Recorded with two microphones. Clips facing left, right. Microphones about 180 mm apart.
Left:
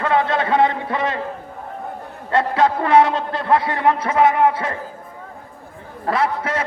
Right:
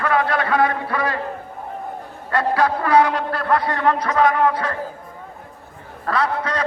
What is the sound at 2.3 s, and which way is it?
A man's voice, 25° left (ahead or behind).